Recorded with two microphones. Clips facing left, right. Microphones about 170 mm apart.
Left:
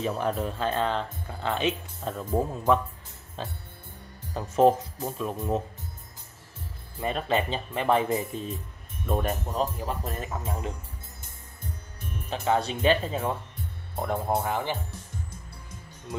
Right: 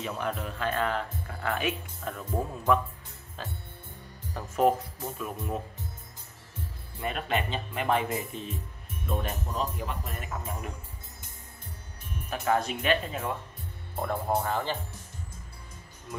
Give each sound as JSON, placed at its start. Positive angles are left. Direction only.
{"t": 0.0, "sound": "speech", "side_deg": 35}
{"t": 4.3, "sound": "speech", "side_deg": 25}
{"t": 7.1, "sound": "speech", "side_deg": 35}
{"t": 12.3, "sound": "speech", "side_deg": 30}
{"t": 13.9, "sound": "speech", "side_deg": 20}